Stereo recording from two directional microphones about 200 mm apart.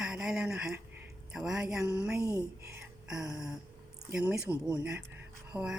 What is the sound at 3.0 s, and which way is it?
Speech, 5° right (ahead or behind).